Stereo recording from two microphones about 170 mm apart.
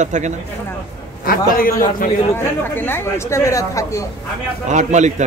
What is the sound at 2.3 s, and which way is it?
Speech, 15° left (ahead or behind).